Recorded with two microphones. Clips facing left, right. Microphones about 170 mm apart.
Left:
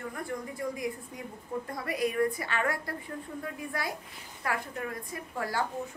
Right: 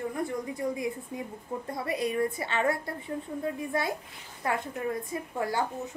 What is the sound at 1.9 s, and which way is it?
A woman's voice, 25° right (ahead or behind).